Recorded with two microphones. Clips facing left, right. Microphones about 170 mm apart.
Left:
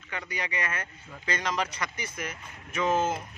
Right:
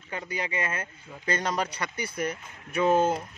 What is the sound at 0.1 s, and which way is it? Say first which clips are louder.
A man's voice: right 3 dB; 30° right (ahead or behind).